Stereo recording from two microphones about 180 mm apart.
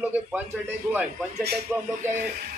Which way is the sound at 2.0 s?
55° right (ahead or behind).